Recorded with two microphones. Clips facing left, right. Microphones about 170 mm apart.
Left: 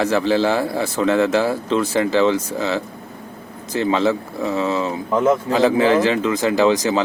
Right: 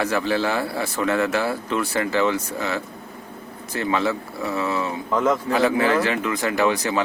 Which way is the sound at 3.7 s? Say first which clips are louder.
Left 5 dB; 25° left (ahead or behind).